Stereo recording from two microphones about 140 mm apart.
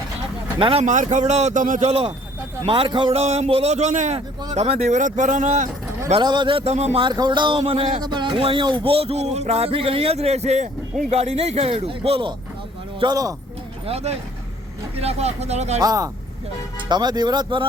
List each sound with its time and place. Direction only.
0.6 s speech: 40° right (ahead or behind)
0.9 s speech: 60° right (ahead or behind)
1.9 s a man's voice: 40° right (ahead or behind); by 5.6 s 60° right (ahead or behind)
6.1 s a man's voice: 35° right (ahead or behind); by 7.0 s 50° right (ahead or behind)
7.0 s a man's voice: 30° right (ahead or behind)
13.0 s speech: 30° right (ahead or behind)
13.8 s speech: 50° right (ahead or behind)
15.8 s a man's voice: 25° right (ahead or behind)